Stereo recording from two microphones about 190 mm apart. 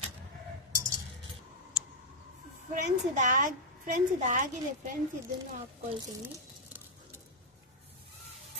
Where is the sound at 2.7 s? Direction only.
40° right (ahead or behind).